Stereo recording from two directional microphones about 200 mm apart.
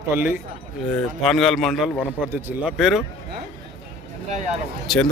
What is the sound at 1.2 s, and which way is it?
A man's voice, 5° left (ahead or behind).